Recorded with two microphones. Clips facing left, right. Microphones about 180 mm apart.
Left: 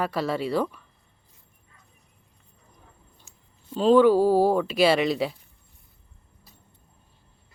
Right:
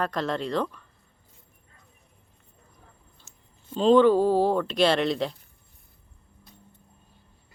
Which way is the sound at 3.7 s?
5° left (ahead or behind).